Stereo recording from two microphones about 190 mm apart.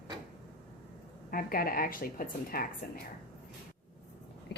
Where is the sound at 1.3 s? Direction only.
50° left (ahead or behind).